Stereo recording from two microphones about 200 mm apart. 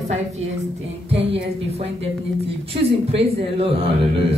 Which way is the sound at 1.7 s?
30° right (ahead or behind).